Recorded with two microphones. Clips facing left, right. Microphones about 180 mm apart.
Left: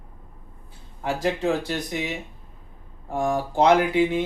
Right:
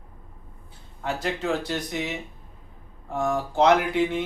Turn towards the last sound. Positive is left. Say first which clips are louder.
# left 3 dB
turn(degrees=15)  # may be behind; listen again after turning